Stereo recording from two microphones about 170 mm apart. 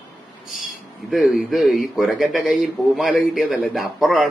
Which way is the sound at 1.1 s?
Centre (ahead or behind).